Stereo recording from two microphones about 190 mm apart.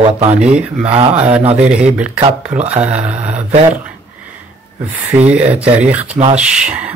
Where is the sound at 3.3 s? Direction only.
35° right (ahead or behind).